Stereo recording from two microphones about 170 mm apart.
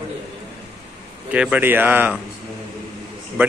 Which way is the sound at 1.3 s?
10° right (ahead or behind).